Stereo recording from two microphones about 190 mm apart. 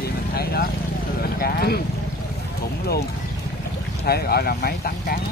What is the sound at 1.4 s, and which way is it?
Speech, 55° left (ahead or behind).